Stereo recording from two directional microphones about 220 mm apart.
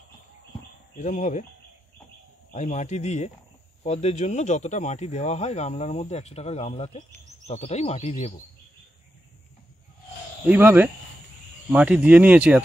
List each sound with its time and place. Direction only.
0.9 s a man's voice: 35° left (ahead or behind)
2.5 s a man's voice: 30° left (ahead or behind)
10.5 s speech: 10° right (ahead or behind)